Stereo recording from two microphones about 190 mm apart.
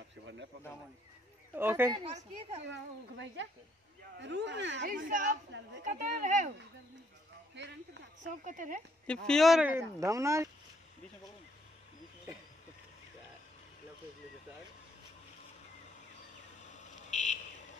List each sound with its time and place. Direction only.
1.5 s speech: 10° right (ahead or behind)
2.0 s a woman's voice: 35° right (ahead or behind)
2.7 s speech: 70° right (ahead or behind)
4.9 s a woman's voice: 45° right (ahead or behind)
8.5 s a woman's voice: 45° right (ahead or behind)
9.0 s speech: 5° left (ahead or behind); by 10.5 s 15° right (ahead or behind)
16.6 s fire alarm: 40° left (ahead or behind)